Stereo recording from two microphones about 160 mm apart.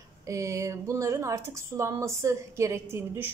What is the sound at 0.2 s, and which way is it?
Speech, 20° right (ahead or behind).